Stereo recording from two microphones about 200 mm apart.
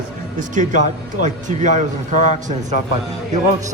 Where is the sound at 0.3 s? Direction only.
40° right (ahead or behind).